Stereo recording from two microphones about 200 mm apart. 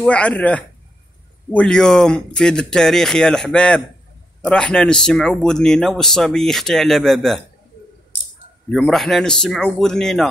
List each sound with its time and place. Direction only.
0.0 s speech: 5° left (ahead or behind)
8.7 s speech: centre (ahead or behind)